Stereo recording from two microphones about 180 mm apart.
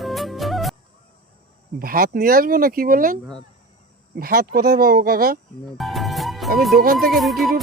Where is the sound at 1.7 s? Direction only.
55° right (ahead or behind).